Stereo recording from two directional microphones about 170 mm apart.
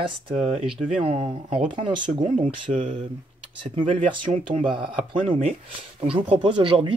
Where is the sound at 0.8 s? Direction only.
45° right (ahead or behind).